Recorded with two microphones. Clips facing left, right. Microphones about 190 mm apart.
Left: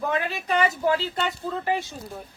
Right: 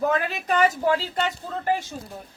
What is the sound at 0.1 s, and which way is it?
A woman's voice, 45° right (ahead or behind).